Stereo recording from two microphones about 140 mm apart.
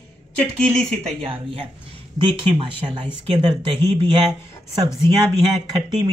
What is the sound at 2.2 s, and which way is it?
Speech, 40° right (ahead or behind).